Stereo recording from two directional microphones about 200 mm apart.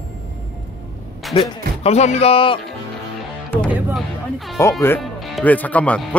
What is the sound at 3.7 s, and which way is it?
Speech, 5° right (ahead or behind).